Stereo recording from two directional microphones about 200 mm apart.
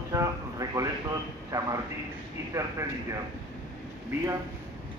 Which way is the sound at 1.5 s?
15° right (ahead or behind).